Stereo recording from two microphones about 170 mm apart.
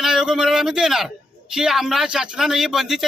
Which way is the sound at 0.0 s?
5° right (ahead or behind).